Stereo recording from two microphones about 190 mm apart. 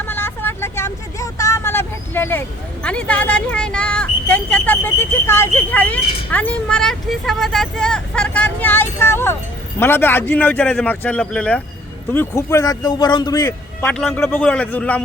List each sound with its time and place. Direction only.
0.0 s vehicle: 10° left (ahead or behind)
2.8 s speech: 5° left (ahead or behind)
13.8 s speech: centre (ahead or behind)